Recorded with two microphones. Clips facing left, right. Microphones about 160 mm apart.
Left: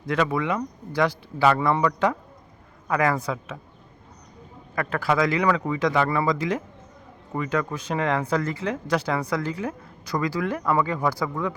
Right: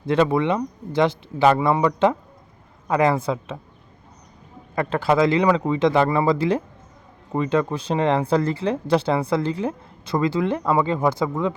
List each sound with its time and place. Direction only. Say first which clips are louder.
0.0 s speech: right 5 dB; 30° right (ahead or behind)
4.7 s speech: right 4 dB; 25° right (ahead or behind)